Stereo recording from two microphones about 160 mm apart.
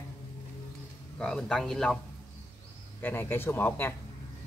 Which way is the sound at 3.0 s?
15° left (ahead or behind).